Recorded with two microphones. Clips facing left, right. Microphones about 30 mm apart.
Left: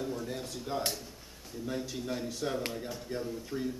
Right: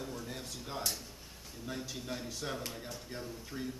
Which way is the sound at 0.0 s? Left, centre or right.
Centre.